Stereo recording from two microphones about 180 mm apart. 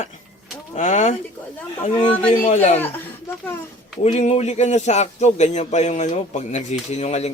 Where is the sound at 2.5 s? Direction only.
35° left (ahead or behind).